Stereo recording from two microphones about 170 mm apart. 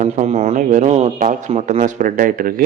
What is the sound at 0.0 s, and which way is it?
Speech, 40° right (ahead or behind).